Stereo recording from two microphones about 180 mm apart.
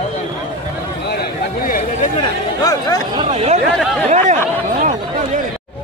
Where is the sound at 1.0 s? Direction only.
60° left (ahead or behind).